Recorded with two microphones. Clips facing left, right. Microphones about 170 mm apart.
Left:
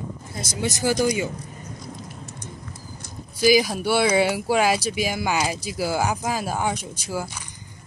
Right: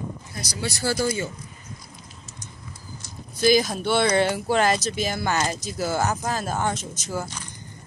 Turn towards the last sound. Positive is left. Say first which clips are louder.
# left 1 dB
turn(degrees=10)  # may be behind; listen again after turning